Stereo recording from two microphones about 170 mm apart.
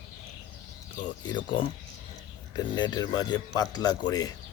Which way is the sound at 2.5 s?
25° left (ahead or behind).